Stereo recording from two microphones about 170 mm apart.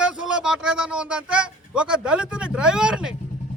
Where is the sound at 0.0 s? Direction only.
5° right (ahead or behind).